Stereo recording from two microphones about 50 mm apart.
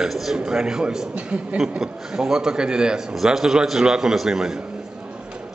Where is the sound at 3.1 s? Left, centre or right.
Centre.